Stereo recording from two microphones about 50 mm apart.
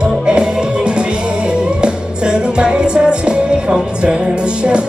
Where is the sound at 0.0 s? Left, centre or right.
Centre.